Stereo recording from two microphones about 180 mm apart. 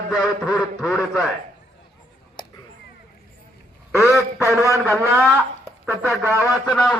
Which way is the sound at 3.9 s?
15° left (ahead or behind).